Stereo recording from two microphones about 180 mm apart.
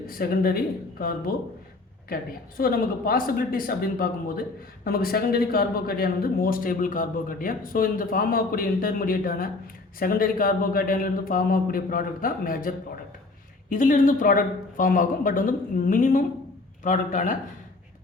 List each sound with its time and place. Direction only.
0.0 s speech: 55° left (ahead or behind)
2.6 s speech: 55° left (ahead or behind)